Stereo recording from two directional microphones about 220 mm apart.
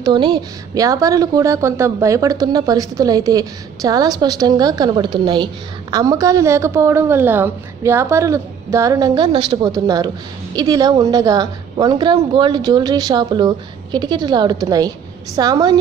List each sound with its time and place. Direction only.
0.0 s a woman's voice: 20° right (ahead or behind)